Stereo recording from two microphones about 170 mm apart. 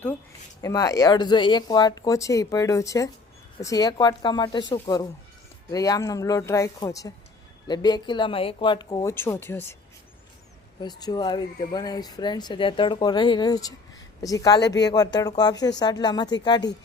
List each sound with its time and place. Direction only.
0.6 s speech: 20° left (ahead or behind)
10.8 s speech: 25° left (ahead or behind)